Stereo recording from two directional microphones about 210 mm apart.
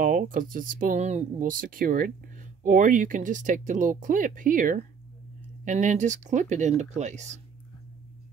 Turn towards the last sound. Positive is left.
turn(degrees=-35)  # may be behind; listen again after turning